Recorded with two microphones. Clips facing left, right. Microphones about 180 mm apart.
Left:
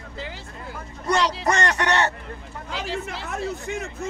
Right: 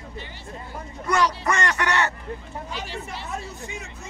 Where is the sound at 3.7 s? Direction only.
50° left (ahead or behind).